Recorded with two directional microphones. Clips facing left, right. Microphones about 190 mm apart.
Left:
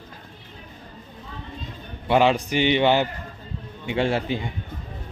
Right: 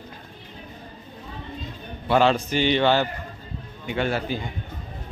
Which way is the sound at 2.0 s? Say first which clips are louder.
Left 1 dB; 15° left (ahead or behind).